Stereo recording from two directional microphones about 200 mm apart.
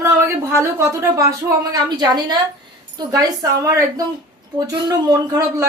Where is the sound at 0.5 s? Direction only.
15° right (ahead or behind).